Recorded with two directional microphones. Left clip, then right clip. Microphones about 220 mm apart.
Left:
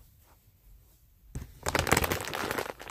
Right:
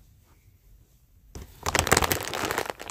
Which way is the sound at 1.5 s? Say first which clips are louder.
Right 4 dB; centre (ahead or behind).